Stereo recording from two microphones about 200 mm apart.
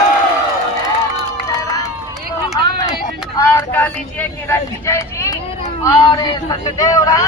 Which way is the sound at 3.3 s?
10° left (ahead or behind).